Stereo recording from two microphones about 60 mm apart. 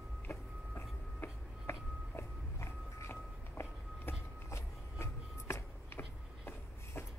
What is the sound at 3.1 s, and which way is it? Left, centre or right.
Vehicle, left.